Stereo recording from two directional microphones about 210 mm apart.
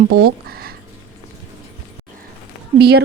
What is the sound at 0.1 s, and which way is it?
Speech, 45° right (ahead or behind).